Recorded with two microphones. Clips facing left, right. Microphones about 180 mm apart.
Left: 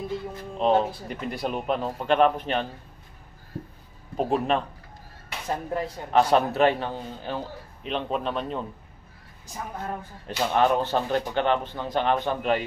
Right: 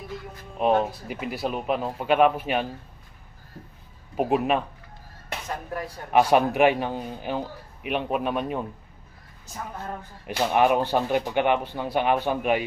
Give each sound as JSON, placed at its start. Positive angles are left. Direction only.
{"t": 0.6, "sound": "speech", "side_deg": -10}
{"t": 4.2, "sound": "speech", "side_deg": -10}
{"t": 5.5, "sound": "speech", "side_deg": 25}
{"t": 6.1, "sound": "speech", "side_deg": -10}
{"t": 10.2, "sound": "speech", "side_deg": -15}